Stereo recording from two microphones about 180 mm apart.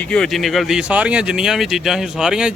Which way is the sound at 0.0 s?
5° left (ahead or behind).